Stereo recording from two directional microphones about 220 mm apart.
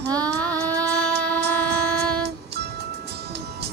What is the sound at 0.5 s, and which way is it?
Music, 15° right (ahead or behind).